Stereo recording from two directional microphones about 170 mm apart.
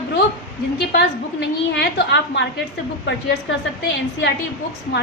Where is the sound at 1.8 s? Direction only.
90° left.